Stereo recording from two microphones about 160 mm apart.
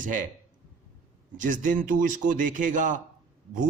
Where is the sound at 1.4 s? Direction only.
55° right (ahead or behind).